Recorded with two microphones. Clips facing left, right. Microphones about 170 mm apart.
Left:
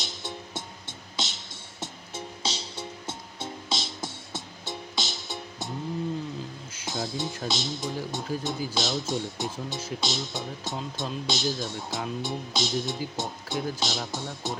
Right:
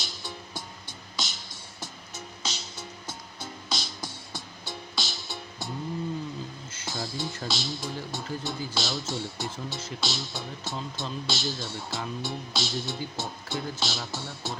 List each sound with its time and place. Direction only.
0.0 s music: 20° left (ahead or behind)
7.4 s speech: 20° left (ahead or behind)